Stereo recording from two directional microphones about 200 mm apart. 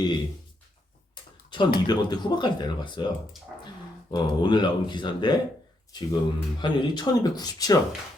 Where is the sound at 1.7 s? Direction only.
20° left (ahead or behind).